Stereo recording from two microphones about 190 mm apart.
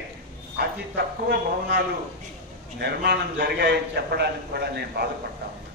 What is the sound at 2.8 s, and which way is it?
A man's voice, 60° right (ahead or behind).